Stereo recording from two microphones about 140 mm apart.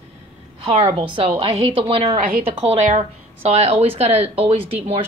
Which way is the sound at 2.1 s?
85° right.